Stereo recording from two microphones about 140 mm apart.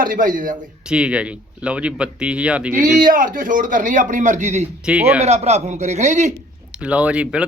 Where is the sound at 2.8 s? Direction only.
75° right (ahead or behind); by 4.7 s 55° right (ahead or behind).